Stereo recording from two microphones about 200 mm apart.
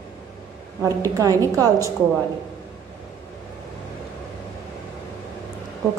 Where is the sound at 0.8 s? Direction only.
15° right (ahead or behind).